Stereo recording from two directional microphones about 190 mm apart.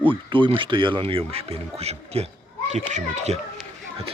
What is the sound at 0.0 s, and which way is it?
A child's voice, 25° right (ahead or behind).